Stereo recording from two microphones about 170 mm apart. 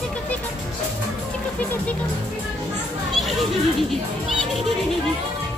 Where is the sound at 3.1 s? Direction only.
Centre (ahead or behind).